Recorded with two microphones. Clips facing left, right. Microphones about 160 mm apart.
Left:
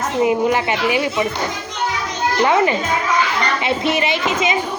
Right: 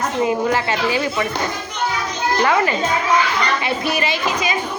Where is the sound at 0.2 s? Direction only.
20° left (ahead or behind).